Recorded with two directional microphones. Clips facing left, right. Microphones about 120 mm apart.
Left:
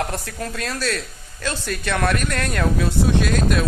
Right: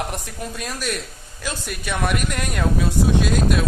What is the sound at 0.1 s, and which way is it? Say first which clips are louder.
Speech: left 2 dB; 15° right (ahead or behind).